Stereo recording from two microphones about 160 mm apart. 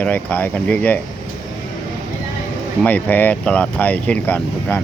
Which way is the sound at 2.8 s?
10° left (ahead or behind).